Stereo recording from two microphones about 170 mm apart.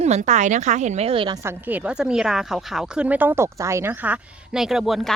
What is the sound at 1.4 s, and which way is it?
A woman's voice, 10° right (ahead or behind).